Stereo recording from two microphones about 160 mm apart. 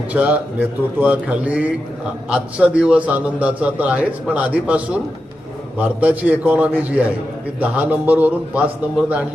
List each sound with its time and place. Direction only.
0.1 s a man's voice: 10° right (ahead or behind)